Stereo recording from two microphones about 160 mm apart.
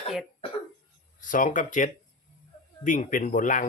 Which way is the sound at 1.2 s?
55° left (ahead or behind).